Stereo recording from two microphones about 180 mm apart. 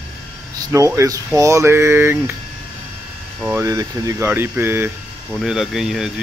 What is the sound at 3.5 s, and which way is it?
Speech, 20° right (ahead or behind).